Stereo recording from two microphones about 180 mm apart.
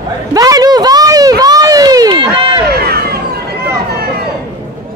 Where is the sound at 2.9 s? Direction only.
60° right (ahead or behind).